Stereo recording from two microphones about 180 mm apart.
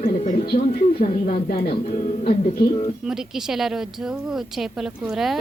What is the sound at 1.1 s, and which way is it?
Speech, 35° left (ahead or behind).